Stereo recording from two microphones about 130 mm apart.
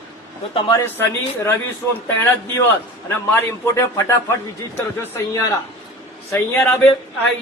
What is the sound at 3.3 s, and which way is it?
A man's voice, 20° left (ahead or behind).